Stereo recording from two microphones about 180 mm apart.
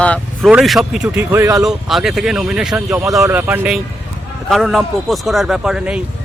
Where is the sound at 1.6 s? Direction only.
Centre (ahead or behind).